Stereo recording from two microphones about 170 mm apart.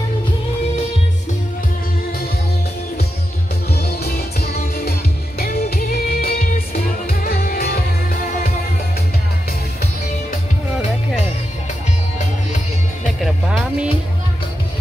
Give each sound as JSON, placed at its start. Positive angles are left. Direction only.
{"t": 3.7, "sound": "music", "side_deg": 65}
{"t": 13.2, "sound": "music", "side_deg": -5}